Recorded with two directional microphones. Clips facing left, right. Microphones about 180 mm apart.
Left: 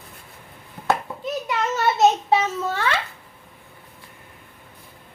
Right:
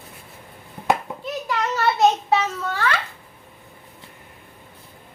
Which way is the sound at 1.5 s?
20° left (ahead or behind).